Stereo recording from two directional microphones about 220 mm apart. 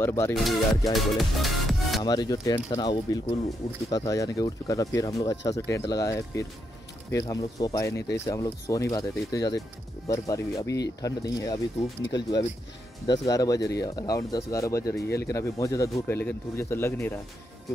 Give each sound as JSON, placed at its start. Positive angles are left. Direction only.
{"t": 0.0, "sound": "speech", "side_deg": 10}
{"t": 0.3, "sound": "speech", "side_deg": 0}
{"t": 2.0, "sound": "speech", "side_deg": 20}